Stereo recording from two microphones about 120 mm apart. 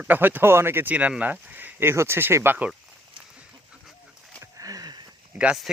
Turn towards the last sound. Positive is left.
turn(degrees=-10)  # may be behind; listen again after turning